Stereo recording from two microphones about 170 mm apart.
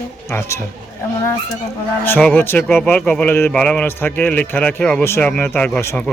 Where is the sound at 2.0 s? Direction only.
10° left (ahead or behind).